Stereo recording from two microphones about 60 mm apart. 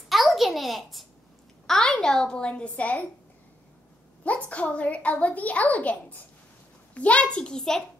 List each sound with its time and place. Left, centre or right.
0.1 s a sound: centre
1.7 s a child's voice: centre; by 3.1 s left
4.2 s a child's voice: left